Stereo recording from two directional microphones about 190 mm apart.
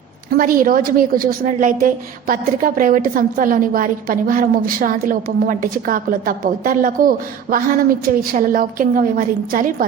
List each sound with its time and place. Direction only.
0.3 s a woman's voice: 45° right (ahead or behind)